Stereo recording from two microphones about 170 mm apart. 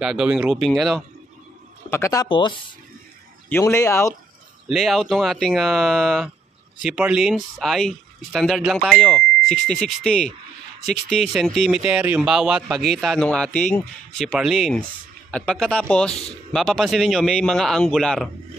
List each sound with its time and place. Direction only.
0.0 s speech: 5° right (ahead or behind)
1.9 s speech: 15° left (ahead or behind)
2.2 s speech: 30° left (ahead or behind)
3.4 s speech: 15° left (ahead or behind)
4.6 s speech: centre (ahead or behind)